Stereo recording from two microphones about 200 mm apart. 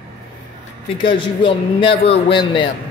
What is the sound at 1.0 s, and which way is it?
A man's voice, 25° left (ahead or behind).